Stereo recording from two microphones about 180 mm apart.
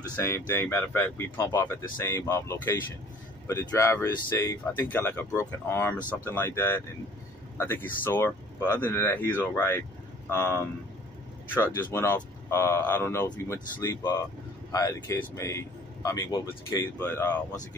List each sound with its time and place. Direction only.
0.1 s speech: 10° left (ahead or behind)
17.0 s speech: 10° left (ahead or behind)